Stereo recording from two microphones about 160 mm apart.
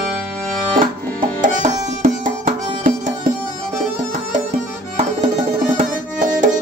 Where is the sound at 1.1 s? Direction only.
55° right (ahead or behind).